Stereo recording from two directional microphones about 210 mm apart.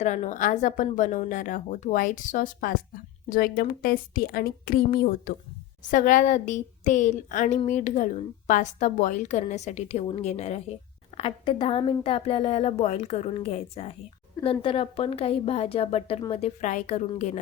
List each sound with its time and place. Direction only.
0.0 s a woman's voice: 35° left (ahead or behind)